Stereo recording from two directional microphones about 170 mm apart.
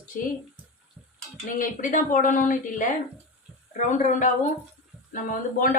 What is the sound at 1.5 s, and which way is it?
Speech, 50° left (ahead or behind).